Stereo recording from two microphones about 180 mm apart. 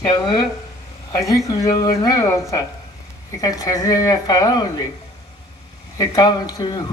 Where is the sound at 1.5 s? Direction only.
20° left (ahead or behind).